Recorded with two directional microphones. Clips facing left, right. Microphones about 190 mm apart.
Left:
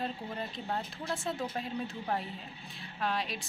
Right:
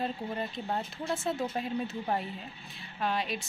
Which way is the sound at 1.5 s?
5° right (ahead or behind).